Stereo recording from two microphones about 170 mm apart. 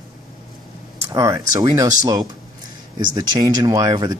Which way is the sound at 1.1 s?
20° right (ahead or behind).